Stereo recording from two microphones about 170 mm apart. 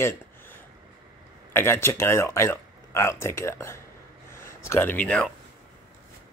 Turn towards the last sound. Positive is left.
turn(degrees=5)  # may be behind; listen again after turning